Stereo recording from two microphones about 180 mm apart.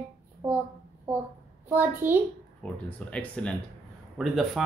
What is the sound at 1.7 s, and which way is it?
Speech, 10° right (ahead or behind).